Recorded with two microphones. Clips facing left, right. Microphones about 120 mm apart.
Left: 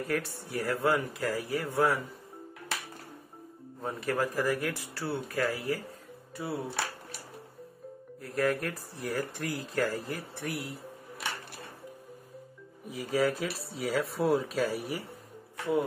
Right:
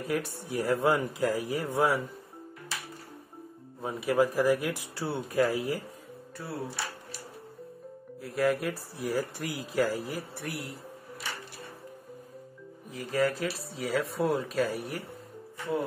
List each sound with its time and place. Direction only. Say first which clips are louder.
0.0 s speech: right 1 dB; 15° right (ahead or behind)
3.8 s speech: right 5 dB; 10° right (ahead or behind)
6.4 s speech: left 4 dB; 15° left (ahead or behind)
8.2 s speech: right 2 dB; centre (ahead or behind)
10.4 s speech: left 1 dB; centre (ahead or behind)
12.9 s speech: even; 5° left (ahead or behind)